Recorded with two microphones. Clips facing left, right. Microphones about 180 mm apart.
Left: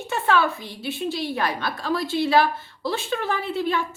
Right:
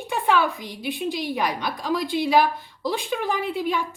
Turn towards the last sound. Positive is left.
turn(degrees=-15)  # may be behind; listen again after turning